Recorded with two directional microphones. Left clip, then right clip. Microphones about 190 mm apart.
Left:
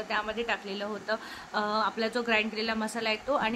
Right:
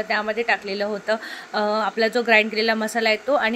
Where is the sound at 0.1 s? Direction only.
20° right (ahead or behind).